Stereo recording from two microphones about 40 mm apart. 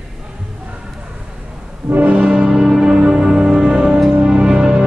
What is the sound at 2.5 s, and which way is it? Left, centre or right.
Music, centre.